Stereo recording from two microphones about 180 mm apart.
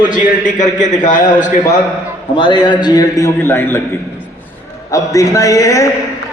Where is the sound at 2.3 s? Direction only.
25° left (ahead or behind).